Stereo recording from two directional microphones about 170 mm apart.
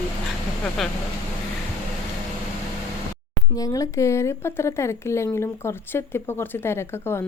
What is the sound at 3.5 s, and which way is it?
A woman's voice, 20° left (ahead or behind).